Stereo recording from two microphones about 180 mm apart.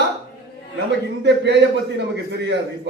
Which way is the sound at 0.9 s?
75° right (ahead or behind).